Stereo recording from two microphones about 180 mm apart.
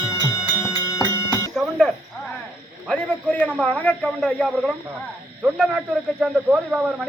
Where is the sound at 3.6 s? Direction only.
10° left (ahead or behind).